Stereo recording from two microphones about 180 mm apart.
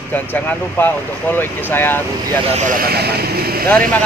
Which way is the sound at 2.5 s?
45° right (ahead or behind).